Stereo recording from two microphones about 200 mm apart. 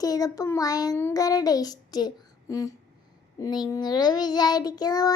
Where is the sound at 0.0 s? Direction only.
15° left (ahead or behind).